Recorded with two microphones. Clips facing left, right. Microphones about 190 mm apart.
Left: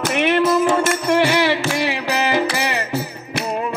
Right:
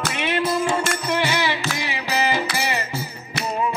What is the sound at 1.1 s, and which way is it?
Music, 70° left (ahead or behind).